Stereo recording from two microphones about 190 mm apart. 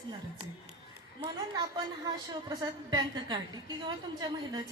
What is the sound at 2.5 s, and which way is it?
A woman's voice, 20° right (ahead or behind).